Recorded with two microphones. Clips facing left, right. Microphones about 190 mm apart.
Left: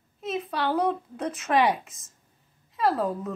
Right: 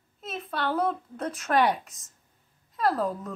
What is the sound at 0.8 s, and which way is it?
A woman's voice, 10° left (ahead or behind).